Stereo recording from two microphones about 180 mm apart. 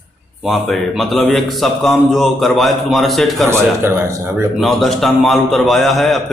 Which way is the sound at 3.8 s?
15° right (ahead or behind).